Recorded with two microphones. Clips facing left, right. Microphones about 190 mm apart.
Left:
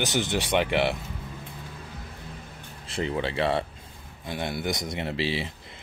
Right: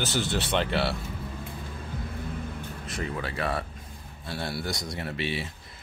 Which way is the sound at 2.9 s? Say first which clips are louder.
Left 6 dB; 25° left (ahead or behind).